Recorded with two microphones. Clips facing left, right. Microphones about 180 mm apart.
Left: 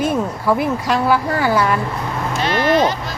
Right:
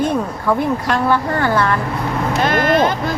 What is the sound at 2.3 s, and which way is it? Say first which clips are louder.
Vehicle: right 1 dB; 50° right (ahead or behind).